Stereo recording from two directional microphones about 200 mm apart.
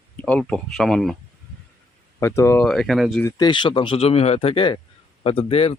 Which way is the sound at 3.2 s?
20° left (ahead or behind).